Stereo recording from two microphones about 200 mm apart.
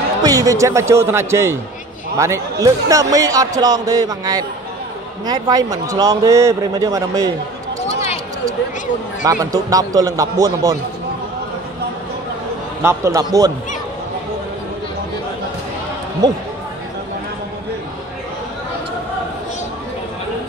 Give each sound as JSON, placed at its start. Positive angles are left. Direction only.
{"t": 0.2, "sound": "a man's voice", "side_deg": -20}
{"t": 9.2, "sound": "a man's voice", "side_deg": -15}
{"t": 12.8, "sound": "a man's voice", "side_deg": -15}